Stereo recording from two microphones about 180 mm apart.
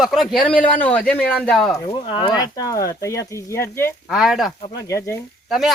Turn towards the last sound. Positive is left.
turn(degrees=0)  # may be behind; listen again after turning